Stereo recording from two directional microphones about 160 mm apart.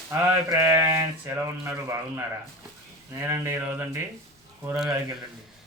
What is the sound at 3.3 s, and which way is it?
Speech, 15° right (ahead or behind).